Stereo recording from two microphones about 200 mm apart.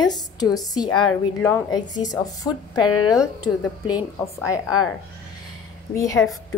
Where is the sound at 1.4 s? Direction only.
10° left (ahead or behind).